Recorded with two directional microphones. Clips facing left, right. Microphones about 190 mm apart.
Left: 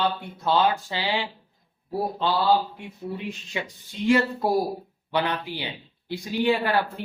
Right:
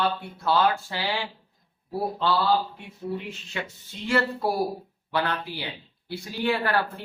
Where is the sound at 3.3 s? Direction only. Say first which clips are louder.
Left 2 dB; 15° left (ahead or behind).